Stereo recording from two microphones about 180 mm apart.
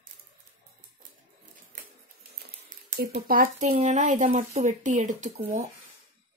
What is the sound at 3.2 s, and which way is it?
Speech, 50° right (ahead or behind).